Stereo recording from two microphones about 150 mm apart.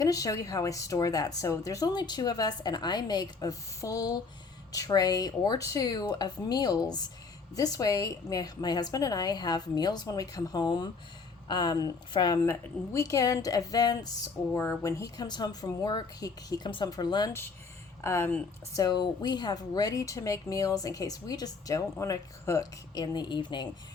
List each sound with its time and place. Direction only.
0.0 s a woman's voice: 25° left (ahead or behind)
18.0 s a woman's voice: 15° left (ahead or behind)